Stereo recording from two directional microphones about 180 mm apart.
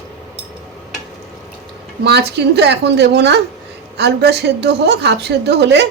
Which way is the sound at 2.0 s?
70° right (ahead or behind).